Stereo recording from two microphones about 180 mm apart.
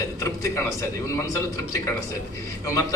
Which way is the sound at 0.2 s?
15° left (ahead or behind).